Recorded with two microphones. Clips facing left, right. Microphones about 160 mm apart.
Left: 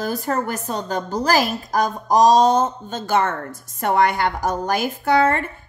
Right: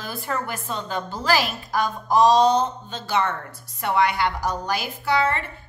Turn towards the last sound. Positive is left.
turn(degrees=50)  # may be behind; listen again after turning